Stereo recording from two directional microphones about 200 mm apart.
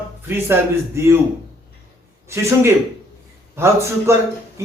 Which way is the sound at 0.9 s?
15° right (ahead or behind).